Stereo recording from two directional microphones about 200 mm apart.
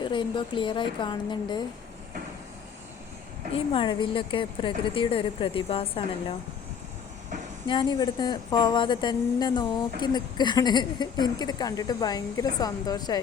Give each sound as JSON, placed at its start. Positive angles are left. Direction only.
{"t": 0.0, "sound": "a woman's voice", "side_deg": 25}
{"t": 3.5, "sound": "a woman's voice", "side_deg": 25}
{"t": 7.7, "sound": "a woman's voice", "side_deg": 20}